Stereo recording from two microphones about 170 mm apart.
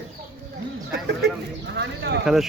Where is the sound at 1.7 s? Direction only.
90° right.